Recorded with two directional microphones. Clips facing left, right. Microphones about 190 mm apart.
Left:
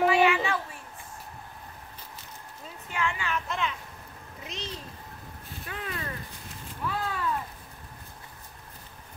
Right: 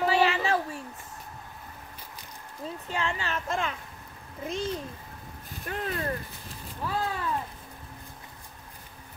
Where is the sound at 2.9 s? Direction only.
35° right (ahead or behind).